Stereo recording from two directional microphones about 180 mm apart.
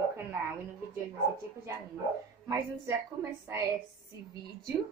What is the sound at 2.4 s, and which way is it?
A woman's voice, 15° right (ahead or behind).